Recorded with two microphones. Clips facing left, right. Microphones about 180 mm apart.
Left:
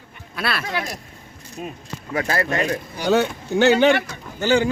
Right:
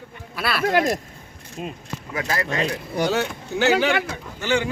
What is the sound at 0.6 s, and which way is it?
Speech, 50° right (ahead or behind).